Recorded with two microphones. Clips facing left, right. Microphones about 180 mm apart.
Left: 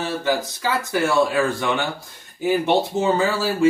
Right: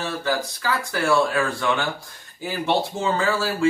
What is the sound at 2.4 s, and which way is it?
Speech, 20° left (ahead or behind).